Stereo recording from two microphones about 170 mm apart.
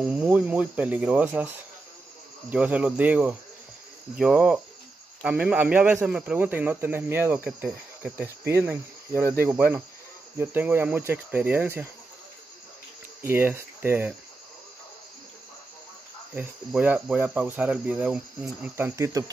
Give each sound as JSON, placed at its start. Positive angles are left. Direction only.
{"t": 0.1, "sound": "speech", "side_deg": -5}
{"t": 2.5, "sound": "speech", "side_deg": -10}
{"t": 4.2, "sound": "cricket", "side_deg": -5}
{"t": 5.2, "sound": "speech", "side_deg": -5}
{"t": 13.2, "sound": "speech", "side_deg": -15}
{"t": 16.3, "sound": "speech", "side_deg": -10}